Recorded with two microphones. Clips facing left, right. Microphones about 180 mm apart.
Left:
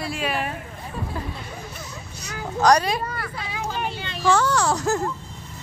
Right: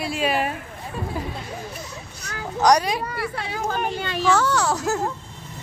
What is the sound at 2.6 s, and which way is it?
Speech, 15° right (ahead or behind).